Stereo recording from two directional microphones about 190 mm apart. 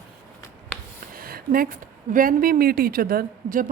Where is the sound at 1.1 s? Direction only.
50° right (ahead or behind).